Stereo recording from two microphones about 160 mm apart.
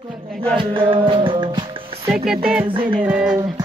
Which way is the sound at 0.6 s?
30° right (ahead or behind).